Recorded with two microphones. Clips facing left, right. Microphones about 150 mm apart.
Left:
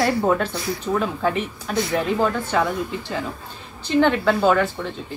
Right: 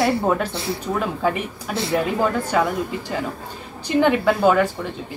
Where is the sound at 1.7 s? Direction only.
30° right (ahead or behind).